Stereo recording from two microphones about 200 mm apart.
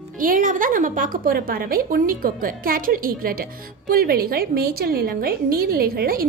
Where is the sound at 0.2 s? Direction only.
40° right (ahead or behind).